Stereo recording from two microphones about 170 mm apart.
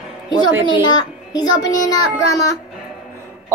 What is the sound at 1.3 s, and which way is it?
Speech, 25° left (ahead or behind).